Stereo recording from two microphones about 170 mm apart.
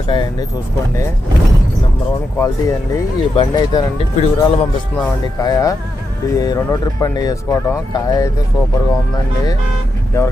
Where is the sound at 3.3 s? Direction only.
25° left (ahead or behind).